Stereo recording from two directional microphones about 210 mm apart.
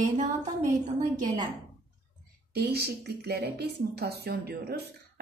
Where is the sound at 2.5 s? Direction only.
50° right (ahead or behind).